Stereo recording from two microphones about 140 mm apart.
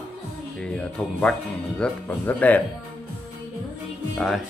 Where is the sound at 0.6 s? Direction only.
5° left (ahead or behind).